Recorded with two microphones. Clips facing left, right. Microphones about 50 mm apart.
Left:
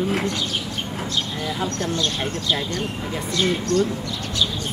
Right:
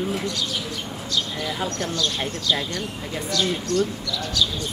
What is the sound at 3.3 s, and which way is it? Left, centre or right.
Speech, left.